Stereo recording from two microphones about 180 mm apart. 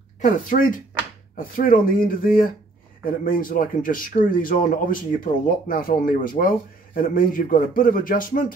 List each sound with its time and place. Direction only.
0.2 s speech: 50° left (ahead or behind)